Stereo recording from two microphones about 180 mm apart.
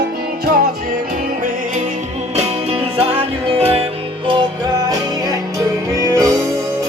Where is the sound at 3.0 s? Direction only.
30° right (ahead or behind).